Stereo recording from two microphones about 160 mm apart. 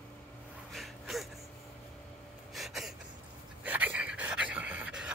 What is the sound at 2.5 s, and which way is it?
Gasp, centre (ahead or behind).